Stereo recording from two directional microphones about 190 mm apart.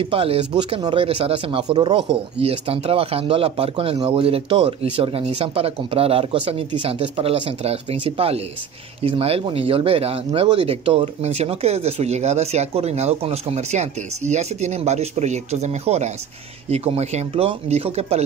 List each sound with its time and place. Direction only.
0.0 s speech: 30° right (ahead or behind)